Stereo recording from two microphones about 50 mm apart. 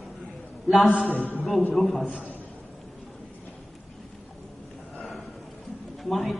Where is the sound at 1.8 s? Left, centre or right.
Centre.